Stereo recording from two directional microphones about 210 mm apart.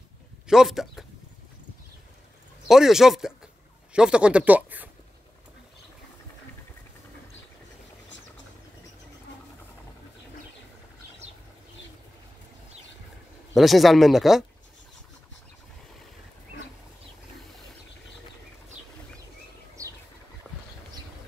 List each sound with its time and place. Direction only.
0.5 s speech: centre (ahead or behind)
2.7 s speech: centre (ahead or behind)
13.5 s speech: centre (ahead or behind)